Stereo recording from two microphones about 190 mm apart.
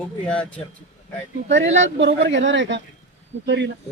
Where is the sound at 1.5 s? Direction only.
70° right (ahead or behind).